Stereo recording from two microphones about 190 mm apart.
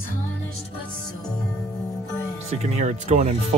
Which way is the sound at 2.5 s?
40° right (ahead or behind).